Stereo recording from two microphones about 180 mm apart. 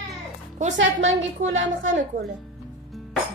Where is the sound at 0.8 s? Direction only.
90° right.